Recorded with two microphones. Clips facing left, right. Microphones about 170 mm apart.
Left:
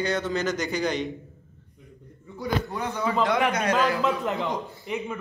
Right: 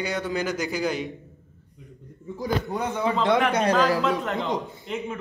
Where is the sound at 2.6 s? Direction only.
20° right (ahead or behind).